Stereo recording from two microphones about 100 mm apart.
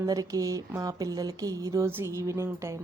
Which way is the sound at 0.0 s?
35° right (ahead or behind).